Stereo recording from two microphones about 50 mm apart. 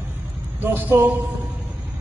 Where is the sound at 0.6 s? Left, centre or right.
Right.